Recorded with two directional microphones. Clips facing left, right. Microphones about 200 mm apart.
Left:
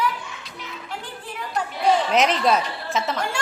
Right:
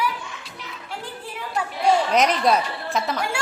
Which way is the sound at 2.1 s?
5° left (ahead or behind).